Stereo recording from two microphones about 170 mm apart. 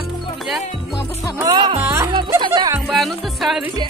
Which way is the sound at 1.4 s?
20° right (ahead or behind).